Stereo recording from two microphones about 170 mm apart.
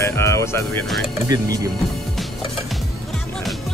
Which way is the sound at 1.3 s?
20° right (ahead or behind).